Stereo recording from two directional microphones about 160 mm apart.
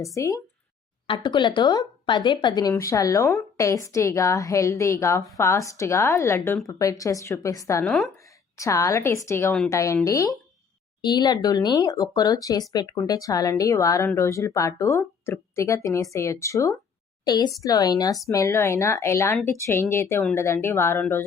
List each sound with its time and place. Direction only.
0.0 s a woman's voice: 20° left (ahead or behind)
1.0 s a woman's voice: 30° left (ahead or behind)
7.9 s a woman's voice: 5° left (ahead or behind)
8.5 s a woman's voice: 20° left (ahead or behind)